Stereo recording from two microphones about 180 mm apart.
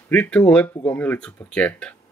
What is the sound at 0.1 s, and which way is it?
Speech, 5° left (ahead or behind).